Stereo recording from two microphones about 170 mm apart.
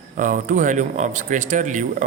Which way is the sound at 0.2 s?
50° right (ahead or behind).